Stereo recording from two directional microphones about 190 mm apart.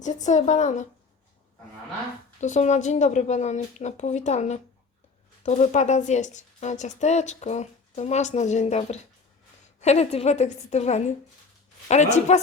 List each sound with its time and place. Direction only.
0.0 s a woman's voice: 40° left (ahead or behind)
2.4 s a woman's voice: 40° left (ahead or behind)